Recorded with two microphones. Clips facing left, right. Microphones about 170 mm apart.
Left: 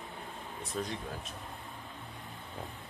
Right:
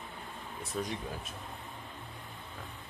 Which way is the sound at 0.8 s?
5° right (ahead or behind).